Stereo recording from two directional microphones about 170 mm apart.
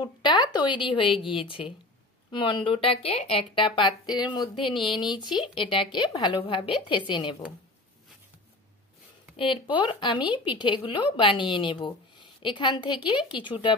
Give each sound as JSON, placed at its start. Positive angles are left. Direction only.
{"t": 0.0, "sound": "speech", "side_deg": 25}
{"t": 9.4, "sound": "speech", "side_deg": 30}